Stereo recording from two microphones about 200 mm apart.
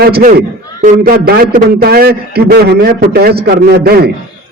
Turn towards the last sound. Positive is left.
turn(degrees=-50)  # may be behind; listen again after turning